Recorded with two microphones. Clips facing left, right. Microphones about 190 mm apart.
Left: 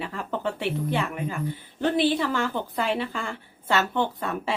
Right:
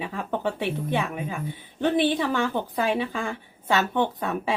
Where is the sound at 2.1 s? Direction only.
15° right (ahead or behind).